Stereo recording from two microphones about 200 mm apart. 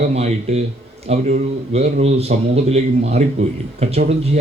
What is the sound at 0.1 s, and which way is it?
A man's voice, 35° right (ahead or behind).